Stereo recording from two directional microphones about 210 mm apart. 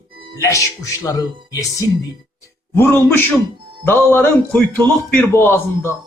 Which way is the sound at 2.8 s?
10° left (ahead or behind).